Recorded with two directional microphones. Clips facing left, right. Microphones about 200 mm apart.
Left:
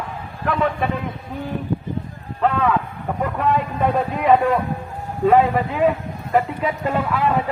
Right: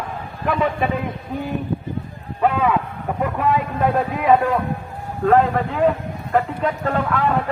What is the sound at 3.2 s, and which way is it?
A man's voice, 5° right (ahead or behind).